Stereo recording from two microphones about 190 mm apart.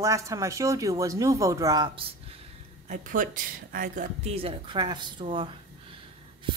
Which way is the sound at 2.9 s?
45° right (ahead or behind).